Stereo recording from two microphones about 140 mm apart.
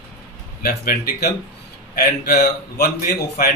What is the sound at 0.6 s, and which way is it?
Speech, 90° left.